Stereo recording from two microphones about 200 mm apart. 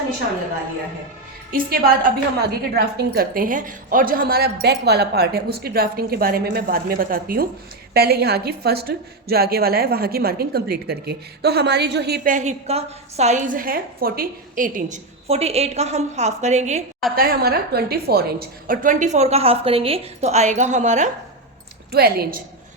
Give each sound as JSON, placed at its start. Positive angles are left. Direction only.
{"t": 1.5, "sound": "a woman's voice", "side_deg": -45}
{"t": 17.2, "sound": "a woman's voice", "side_deg": -50}
{"t": 21.9, "sound": "a woman's voice", "side_deg": -50}